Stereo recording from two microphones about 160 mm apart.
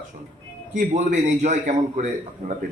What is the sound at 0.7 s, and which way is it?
A man's voice, 50° right (ahead or behind).